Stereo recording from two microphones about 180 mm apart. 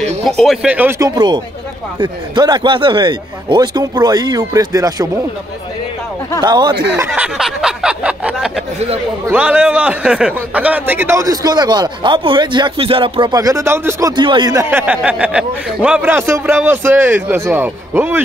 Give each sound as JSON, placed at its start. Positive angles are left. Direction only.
{"t": 0.0, "sound": "a man's voice", "side_deg": 0}
{"t": 6.4, "sound": "a man's voice", "side_deg": -25}
{"t": 7.1, "sound": "a sound", "side_deg": 0}
{"t": 9.2, "sound": "a man's voice", "side_deg": -5}